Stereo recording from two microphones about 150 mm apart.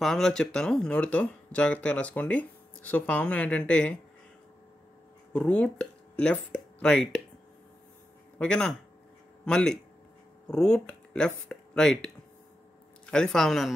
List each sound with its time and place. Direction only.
0.0 s speech: 5° left (ahead or behind)
5.3 s speech: 10° left (ahead or behind)
8.4 s speech: 5° left (ahead or behind)